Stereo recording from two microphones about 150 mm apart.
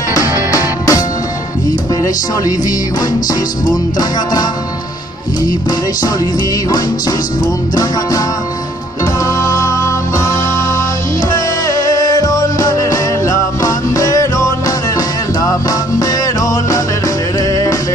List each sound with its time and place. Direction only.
0.1 s music: 20° left (ahead or behind)
9.0 s music: 20° left (ahead or behind)
11.3 s music: 25° left (ahead or behind)
16.0 s music: 20° left (ahead or behind)